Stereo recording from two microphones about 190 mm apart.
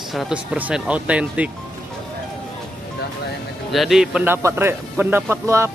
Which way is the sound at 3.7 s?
Centre (ahead or behind).